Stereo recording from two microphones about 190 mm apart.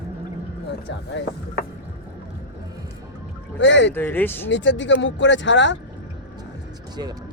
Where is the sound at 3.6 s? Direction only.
75° left (ahead or behind).